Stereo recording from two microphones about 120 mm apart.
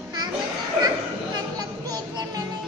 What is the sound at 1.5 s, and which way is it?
Music, 35° right (ahead or behind).